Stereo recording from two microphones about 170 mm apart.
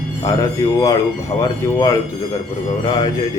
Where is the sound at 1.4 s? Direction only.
20° left (ahead or behind).